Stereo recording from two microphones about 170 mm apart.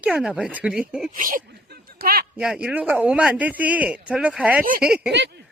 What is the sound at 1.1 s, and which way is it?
Speech, 50° right (ahead or behind).